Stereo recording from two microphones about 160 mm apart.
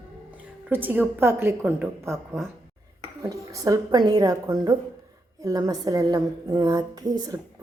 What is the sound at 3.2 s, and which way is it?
A woman's voice, 20° right (ahead or behind).